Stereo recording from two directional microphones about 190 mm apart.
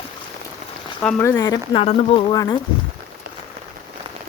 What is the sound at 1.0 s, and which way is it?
Speech, 10° left (ahead or behind).